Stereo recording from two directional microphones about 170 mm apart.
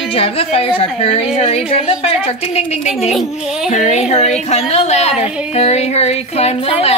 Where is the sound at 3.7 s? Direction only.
40° left (ahead or behind).